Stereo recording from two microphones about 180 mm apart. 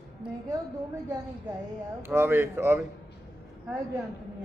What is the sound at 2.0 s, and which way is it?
Speech, 15° right (ahead or behind).